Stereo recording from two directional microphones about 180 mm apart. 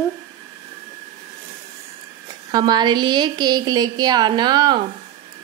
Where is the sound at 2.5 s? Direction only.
25° right (ahead or behind).